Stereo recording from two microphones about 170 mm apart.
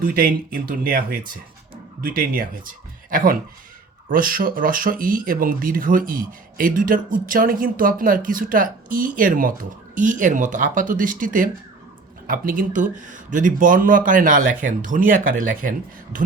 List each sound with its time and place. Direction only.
0.0 s speech: 55° right (ahead or behind)